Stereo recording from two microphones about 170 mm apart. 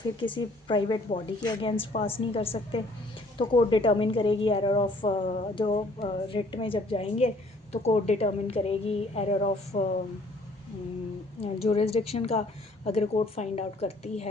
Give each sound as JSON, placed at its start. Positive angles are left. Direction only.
{"t": 0.2, "sound": "a woman's voice", "side_deg": 30}
{"t": 11.4, "sound": "a woman's voice", "side_deg": 35}